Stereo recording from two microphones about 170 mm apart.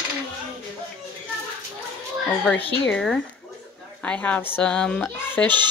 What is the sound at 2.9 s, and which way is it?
A woman's voice, 5° left (ahead or behind).